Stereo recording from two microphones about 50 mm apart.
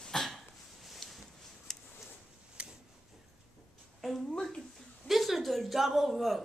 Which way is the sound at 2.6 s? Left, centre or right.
Right.